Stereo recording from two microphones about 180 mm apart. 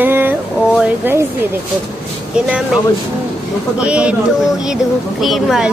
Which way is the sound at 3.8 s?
5° right (ahead or behind).